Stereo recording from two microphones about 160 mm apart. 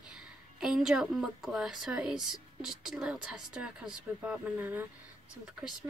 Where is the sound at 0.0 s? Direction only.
5° right (ahead or behind).